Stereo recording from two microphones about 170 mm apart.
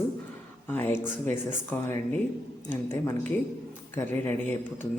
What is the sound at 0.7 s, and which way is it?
Speech, 10° left (ahead or behind).